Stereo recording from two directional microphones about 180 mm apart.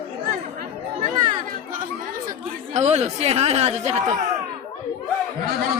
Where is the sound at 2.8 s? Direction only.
40° right (ahead or behind).